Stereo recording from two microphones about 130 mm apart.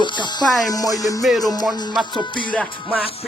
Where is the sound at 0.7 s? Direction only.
30° left (ahead or behind).